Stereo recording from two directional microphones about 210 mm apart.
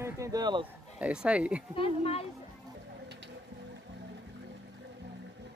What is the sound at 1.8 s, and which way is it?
Speech, 30° left (ahead or behind).